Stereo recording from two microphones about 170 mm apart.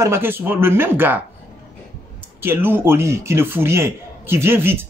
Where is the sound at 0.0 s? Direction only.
15° right (ahead or behind).